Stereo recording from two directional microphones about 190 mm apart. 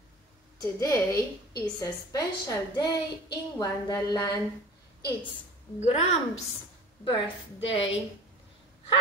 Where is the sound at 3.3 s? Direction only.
20° left (ahead or behind).